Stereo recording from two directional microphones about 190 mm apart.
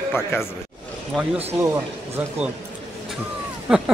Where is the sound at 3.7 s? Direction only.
5° right (ahead or behind).